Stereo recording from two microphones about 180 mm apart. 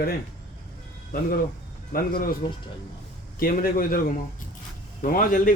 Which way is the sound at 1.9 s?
55° left (ahead or behind).